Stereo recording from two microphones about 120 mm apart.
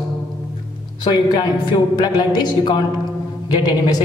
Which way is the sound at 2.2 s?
35° left (ahead or behind).